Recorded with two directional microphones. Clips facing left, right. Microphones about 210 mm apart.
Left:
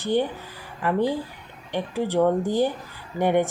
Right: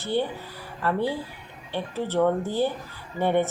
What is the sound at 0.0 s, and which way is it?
A woman's voice, 15° left (ahead or behind).